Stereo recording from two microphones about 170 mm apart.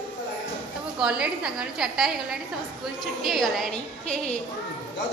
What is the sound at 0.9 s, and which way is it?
A woman's voice, 5° right (ahead or behind).